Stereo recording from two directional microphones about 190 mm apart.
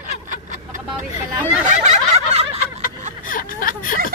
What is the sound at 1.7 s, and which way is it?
Snicker, 35° right (ahead or behind).